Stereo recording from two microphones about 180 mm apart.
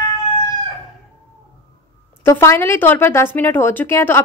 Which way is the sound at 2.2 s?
15° left (ahead or behind).